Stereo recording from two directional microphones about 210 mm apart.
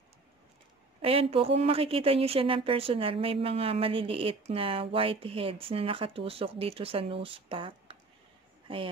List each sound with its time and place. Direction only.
1.0 s a woman's voice: 25° right (ahead or behind)